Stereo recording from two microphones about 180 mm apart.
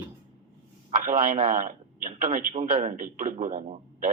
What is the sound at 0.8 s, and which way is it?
A man's voice, 50° right (ahead or behind).